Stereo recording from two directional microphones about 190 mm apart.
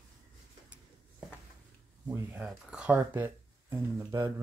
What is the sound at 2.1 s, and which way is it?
Speech, 5° right (ahead or behind).